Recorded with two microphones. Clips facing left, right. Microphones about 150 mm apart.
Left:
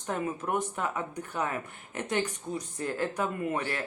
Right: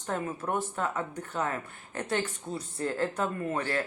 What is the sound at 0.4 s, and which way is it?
Speech, 15° left (ahead or behind).